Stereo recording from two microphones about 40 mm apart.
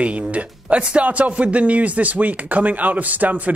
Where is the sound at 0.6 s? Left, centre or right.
Right.